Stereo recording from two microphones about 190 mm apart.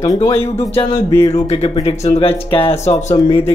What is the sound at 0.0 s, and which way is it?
Speech, 20° left (ahead or behind).